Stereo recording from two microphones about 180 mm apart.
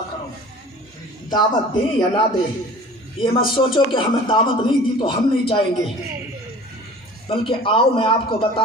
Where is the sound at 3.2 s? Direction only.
30° left (ahead or behind).